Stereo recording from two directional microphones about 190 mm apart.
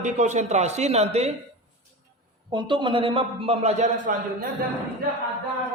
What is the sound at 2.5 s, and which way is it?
A man's voice, 25° right (ahead or behind).